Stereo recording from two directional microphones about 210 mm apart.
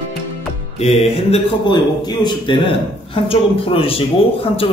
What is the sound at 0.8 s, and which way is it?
Speech, 30° left (ahead or behind).